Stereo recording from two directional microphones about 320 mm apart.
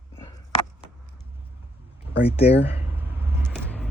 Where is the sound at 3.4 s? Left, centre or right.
Centre.